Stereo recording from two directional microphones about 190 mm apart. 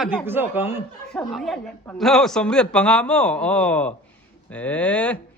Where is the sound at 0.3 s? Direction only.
10° right (ahead or behind).